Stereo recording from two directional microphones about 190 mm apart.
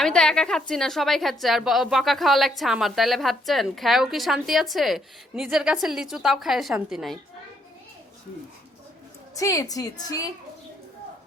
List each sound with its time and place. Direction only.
0.0 s a woman's voice: 5° left (ahead or behind)
9.3 s a woman's voice: 20° left (ahead or behind)